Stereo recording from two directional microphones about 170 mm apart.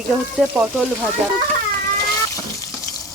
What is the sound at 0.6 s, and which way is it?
Speech, 5° right (ahead or behind).